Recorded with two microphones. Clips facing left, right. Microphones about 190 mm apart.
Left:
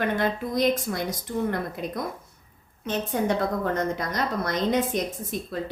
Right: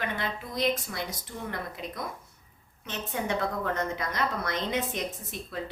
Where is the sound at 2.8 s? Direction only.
40° left (ahead or behind).